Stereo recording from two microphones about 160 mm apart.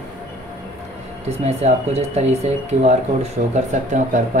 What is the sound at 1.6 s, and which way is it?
Speech, 40° right (ahead or behind).